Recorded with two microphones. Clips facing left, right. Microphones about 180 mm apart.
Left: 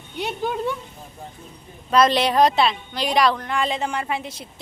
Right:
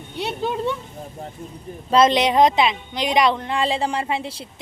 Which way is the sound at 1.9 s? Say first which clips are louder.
Right 2 dB; 20° right (ahead or behind).